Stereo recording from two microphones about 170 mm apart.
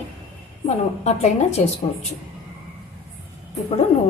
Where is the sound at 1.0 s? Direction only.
40° left (ahead or behind).